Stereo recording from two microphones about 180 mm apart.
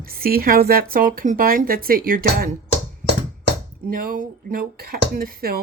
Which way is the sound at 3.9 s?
55° right (ahead or behind).